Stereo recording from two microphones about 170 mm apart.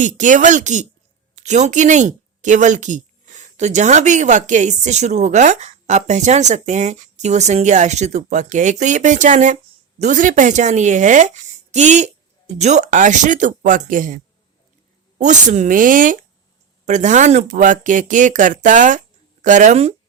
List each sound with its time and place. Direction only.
0.0 s a woman's voice: 50° right (ahead or behind)
15.2 s a woman's voice: 45° right (ahead or behind)